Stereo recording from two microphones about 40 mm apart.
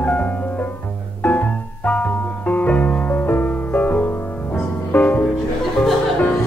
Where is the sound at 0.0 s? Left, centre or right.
Left.